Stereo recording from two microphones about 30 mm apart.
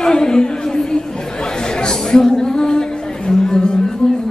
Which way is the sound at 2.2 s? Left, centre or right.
Centre.